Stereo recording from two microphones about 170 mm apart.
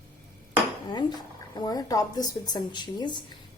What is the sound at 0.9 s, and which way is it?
A woman's voice, 25° left (ahead or behind).